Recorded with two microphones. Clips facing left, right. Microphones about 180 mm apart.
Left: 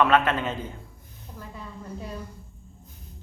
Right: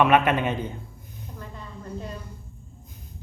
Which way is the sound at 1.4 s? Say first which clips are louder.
Left 2 dB; 5° left (ahead or behind).